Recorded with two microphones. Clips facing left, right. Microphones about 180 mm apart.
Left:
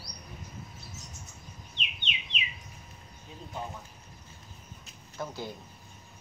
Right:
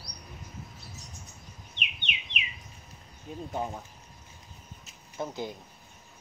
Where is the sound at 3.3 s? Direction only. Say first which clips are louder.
Right 8 dB; 50° right (ahead or behind).